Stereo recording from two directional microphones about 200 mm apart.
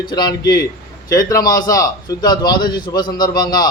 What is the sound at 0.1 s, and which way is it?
A man's voice, 20° left (ahead or behind).